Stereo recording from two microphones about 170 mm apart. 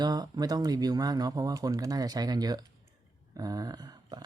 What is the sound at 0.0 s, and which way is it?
Speech, 25° right (ahead or behind).